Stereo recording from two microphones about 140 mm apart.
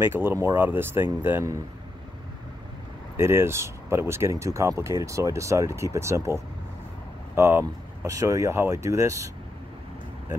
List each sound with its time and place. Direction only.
0.0 s speech: 15° right (ahead or behind)
3.2 s speech: 20° right (ahead or behind)